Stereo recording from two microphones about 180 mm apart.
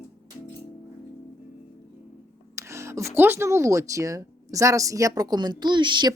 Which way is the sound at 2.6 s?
15° right (ahead or behind).